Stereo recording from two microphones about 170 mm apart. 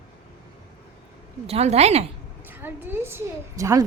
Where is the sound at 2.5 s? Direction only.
10° right (ahead or behind).